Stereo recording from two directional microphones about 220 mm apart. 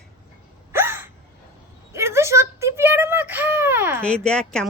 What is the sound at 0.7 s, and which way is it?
Gasp, 10° right (ahead or behind).